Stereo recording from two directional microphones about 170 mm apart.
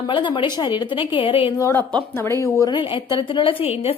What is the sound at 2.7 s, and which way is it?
A woman's voice, 30° left (ahead or behind).